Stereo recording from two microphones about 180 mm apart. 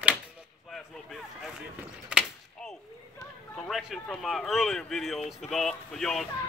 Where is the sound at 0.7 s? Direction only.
Centre (ahead or behind).